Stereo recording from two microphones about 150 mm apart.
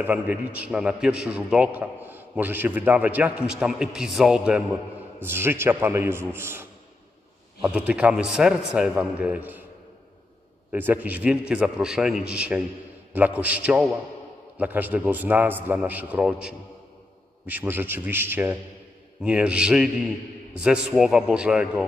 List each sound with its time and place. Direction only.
0.0 s a man's voice: 10° right (ahead or behind)
5.2 s a man's voice: 15° right (ahead or behind)
10.7 s a man's voice: 10° right (ahead or behind)